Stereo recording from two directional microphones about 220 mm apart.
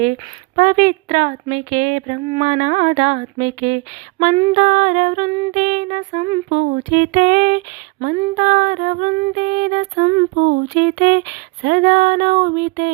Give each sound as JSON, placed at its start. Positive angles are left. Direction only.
{"t": 0.5, "sound": "speech", "side_deg": -35}
{"t": 8.0, "sound": "female singing", "side_deg": -35}